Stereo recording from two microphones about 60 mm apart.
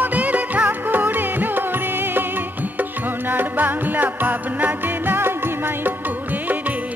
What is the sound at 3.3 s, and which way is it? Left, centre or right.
Music, right.